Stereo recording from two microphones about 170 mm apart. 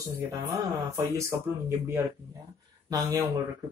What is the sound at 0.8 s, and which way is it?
Speech, 15° right (ahead or behind).